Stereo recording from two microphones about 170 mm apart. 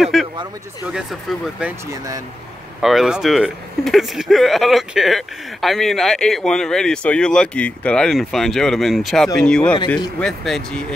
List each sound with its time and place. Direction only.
0.0 s a sound: centre (ahead or behind)
0.9 s speech: 5° right (ahead or behind)
1.9 s speech: 20° right (ahead or behind)
2.8 s speech: centre (ahead or behind)